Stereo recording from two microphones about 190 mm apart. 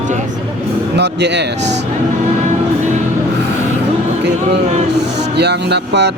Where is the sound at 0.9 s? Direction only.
65° right (ahead or behind).